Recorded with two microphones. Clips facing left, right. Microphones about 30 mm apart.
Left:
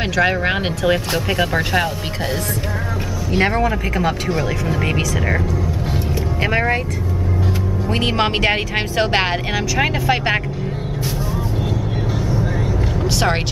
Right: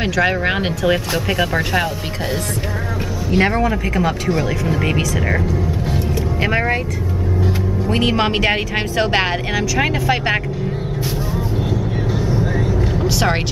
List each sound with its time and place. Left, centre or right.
0.0 s speech: centre
3.3 s speech: centre
6.4 s speech: centre
7.9 s speech: centre
13.0 s music: centre